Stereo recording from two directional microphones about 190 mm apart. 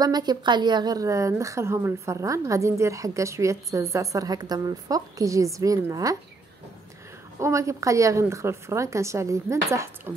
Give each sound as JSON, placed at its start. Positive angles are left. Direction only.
{"t": 0.0, "sound": "a woman's voice", "side_deg": -20}
{"t": 7.3, "sound": "a woman's voice", "side_deg": -15}